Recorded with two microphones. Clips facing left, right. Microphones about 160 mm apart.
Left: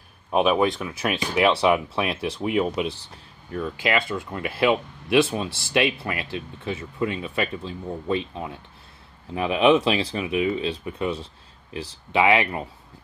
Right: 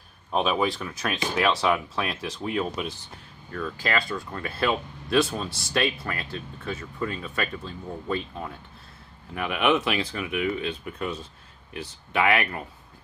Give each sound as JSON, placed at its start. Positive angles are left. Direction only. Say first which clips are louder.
{"t": 0.3, "sound": "speech", "louder": "left 4 dB", "side_deg": 15}
{"t": 9.3, "sound": "speech", "louder": "left 5 dB", "side_deg": 25}